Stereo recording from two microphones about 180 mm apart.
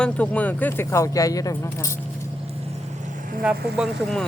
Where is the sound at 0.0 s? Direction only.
10° left (ahead or behind).